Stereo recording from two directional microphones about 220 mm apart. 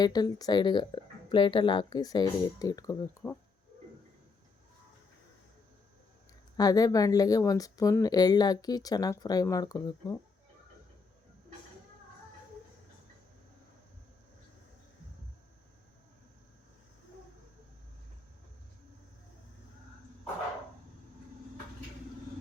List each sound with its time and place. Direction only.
0.0 s speech: 20° left (ahead or behind)
6.6 s speech: 15° left (ahead or behind)